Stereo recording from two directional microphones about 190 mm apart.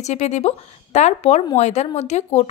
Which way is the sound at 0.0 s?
35° left (ahead or behind).